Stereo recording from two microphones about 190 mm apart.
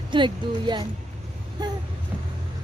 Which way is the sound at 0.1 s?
25° right (ahead or behind).